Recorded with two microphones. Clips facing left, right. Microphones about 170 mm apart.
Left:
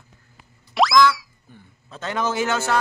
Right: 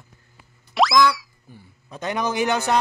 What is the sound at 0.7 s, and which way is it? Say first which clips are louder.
Boing: left 1 dB; centre (ahead or behind).